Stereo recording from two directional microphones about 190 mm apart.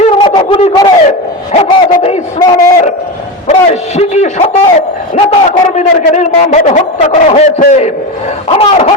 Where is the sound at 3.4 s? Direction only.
35° left (ahead or behind).